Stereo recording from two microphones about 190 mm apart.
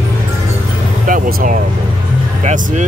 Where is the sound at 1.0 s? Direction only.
45° right (ahead or behind).